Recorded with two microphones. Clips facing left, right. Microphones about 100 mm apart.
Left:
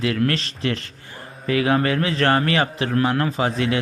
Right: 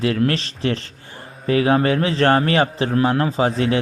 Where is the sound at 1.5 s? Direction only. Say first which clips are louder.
Right 3 dB; 30° right (ahead or behind).